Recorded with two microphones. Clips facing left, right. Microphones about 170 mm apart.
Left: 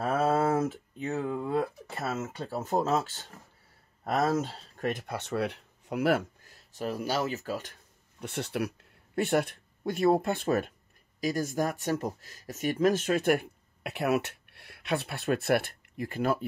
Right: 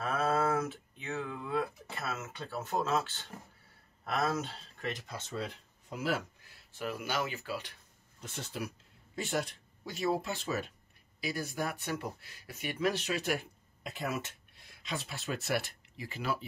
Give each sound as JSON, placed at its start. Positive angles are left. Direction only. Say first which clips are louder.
{"t": 0.0, "sound": "a sound", "louder": "left 5 dB", "side_deg": 40}
{"t": 4.0, "sound": "speech", "louder": "left 6 dB", "side_deg": 40}
{"t": 6.4, "sound": "speech", "louder": "left 4 dB", "side_deg": 40}
{"t": 8.2, "sound": "speech", "louder": "left 8 dB", "side_deg": 65}
{"t": 11.1, "sound": "speech", "louder": "left 7 dB", "side_deg": 45}